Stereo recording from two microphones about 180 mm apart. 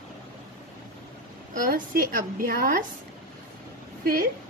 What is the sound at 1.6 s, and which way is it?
A woman's voice, 55° right (ahead or behind).